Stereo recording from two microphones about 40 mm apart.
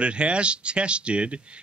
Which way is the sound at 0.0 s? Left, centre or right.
Right.